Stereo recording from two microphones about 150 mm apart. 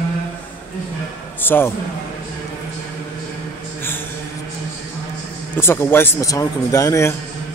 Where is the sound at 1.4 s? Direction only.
15° left (ahead or behind).